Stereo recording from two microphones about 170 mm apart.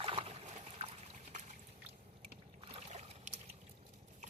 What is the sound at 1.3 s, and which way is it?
Boat, 45° right (ahead or behind).